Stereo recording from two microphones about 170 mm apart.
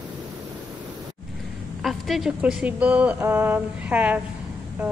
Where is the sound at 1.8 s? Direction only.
Centre (ahead or behind).